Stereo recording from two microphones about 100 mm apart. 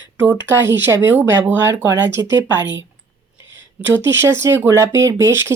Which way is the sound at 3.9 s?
25° right (ahead or behind).